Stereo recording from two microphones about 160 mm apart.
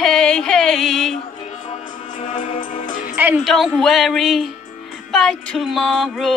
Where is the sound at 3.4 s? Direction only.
Centre (ahead or behind).